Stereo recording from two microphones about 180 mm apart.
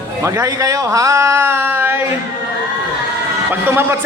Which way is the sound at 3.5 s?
10° right (ahead or behind).